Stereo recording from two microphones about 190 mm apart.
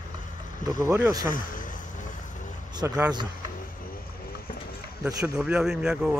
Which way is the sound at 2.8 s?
15° right (ahead or behind).